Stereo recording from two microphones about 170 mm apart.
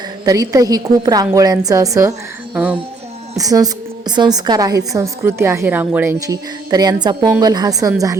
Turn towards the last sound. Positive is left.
turn(degrees=-20)  # may be behind; listen again after turning